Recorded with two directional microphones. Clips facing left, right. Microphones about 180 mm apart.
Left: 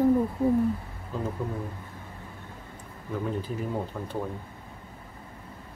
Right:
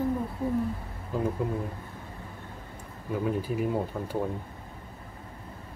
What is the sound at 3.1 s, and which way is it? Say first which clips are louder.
Speech: right 2 dB; 10° right (ahead or behind).